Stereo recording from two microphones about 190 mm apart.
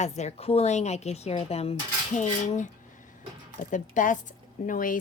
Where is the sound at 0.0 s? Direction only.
35° left (ahead or behind).